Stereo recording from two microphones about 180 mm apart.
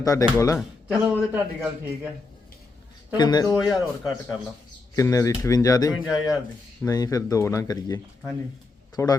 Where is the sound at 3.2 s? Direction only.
20° left (ahead or behind).